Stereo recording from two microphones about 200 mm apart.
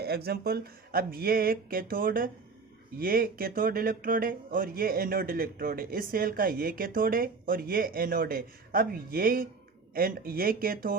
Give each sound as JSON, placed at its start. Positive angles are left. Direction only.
{"t": 0.0, "sound": "speech", "side_deg": -50}